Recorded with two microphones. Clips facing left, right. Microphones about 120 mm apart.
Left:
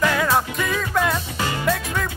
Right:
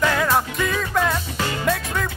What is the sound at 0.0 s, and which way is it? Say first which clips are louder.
Music: even; centre (ahead or behind).